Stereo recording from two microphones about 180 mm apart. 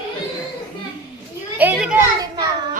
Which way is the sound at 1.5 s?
5° right (ahead or behind).